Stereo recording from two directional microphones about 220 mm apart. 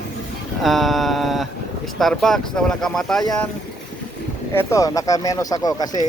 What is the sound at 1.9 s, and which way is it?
Speech, centre (ahead or behind).